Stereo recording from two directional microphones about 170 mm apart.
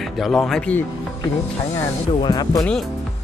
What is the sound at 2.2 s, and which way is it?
Speech, 25° left (ahead or behind).